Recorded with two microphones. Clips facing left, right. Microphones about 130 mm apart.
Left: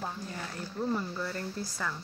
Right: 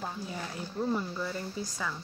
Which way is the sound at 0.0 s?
5° right (ahead or behind).